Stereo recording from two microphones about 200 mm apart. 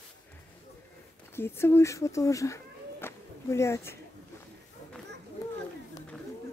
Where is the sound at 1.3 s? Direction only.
10° left (ahead or behind).